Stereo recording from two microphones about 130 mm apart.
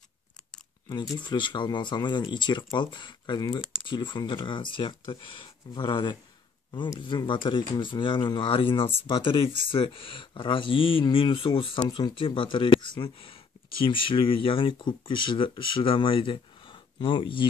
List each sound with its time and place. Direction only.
0.8 s speech: 35° left (ahead or behind)